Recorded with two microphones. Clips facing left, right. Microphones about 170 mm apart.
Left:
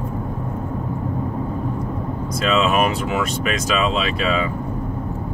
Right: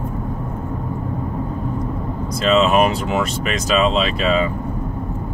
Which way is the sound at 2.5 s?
35° right (ahead or behind).